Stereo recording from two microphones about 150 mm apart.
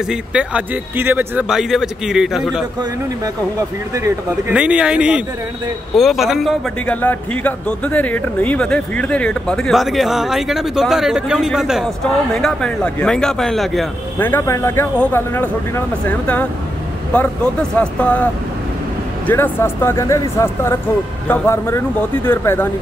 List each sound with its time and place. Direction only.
0.1 s speech: 5° right (ahead or behind)
3.9 s speech: 20° right (ahead or behind)
4.6 s speech: 5° right (ahead or behind)
6.9 s speech: 10° left (ahead or behind)
14.2 s speech: 15° left (ahead or behind)